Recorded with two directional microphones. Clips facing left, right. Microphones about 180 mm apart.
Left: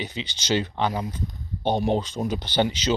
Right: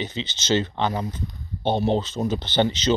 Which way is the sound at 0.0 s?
10° left (ahead or behind).